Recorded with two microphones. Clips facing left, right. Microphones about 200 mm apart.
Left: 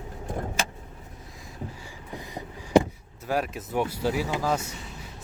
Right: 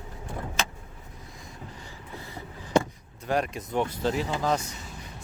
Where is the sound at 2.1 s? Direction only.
15° left (ahead or behind).